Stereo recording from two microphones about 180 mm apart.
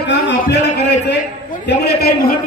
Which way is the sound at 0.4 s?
70° left (ahead or behind).